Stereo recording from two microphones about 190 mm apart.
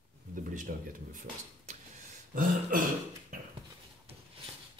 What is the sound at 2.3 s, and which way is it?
Speech, 45° right (ahead or behind).